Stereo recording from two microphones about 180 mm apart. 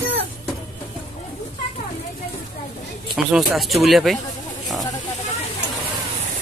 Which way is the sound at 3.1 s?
Centre (ahead or behind).